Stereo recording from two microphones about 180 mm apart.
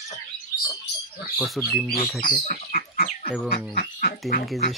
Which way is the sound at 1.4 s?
Centre (ahead or behind).